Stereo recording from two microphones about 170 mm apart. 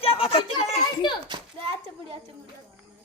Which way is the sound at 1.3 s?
30° right (ahead or behind).